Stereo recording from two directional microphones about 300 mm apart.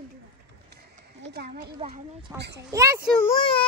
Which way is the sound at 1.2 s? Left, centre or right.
Right.